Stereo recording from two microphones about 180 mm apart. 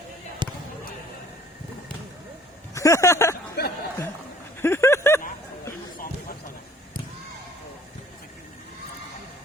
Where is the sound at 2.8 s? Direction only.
15° left (ahead or behind).